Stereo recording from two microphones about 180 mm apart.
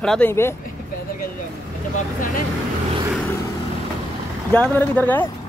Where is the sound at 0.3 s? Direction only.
15° left (ahead or behind).